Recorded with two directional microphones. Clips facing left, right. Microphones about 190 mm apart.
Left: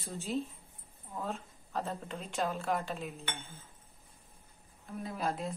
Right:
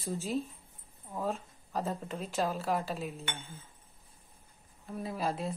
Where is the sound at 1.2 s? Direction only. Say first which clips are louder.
Right 7 dB; 5° right (ahead or behind).